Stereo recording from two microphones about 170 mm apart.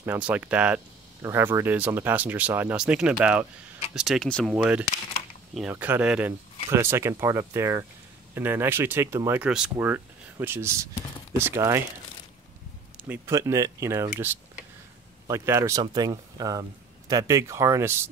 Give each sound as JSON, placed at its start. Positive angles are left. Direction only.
{"t": 0.0, "sound": "speech", "side_deg": -10}
{"t": 4.6, "sound": "speech", "side_deg": -5}
{"t": 13.1, "sound": "speech", "side_deg": -20}